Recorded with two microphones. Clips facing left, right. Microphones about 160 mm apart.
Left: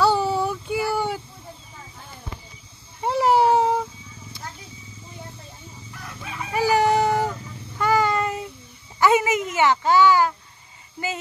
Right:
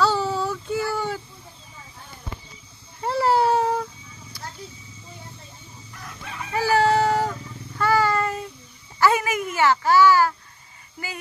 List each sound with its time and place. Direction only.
0.0 s child singing: 15° left (ahead or behind)
3.0 s baby cry: 15° left (ahead or behind)
6.5 s a sound: 15° left (ahead or behind)